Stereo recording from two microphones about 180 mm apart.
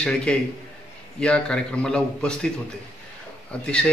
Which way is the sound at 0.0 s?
5° left (ahead or behind).